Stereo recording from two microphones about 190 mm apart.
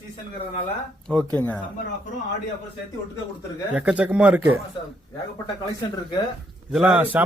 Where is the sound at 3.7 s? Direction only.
5° right (ahead or behind).